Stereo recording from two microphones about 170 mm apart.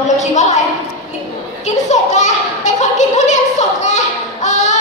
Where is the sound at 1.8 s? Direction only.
45° left (ahead or behind).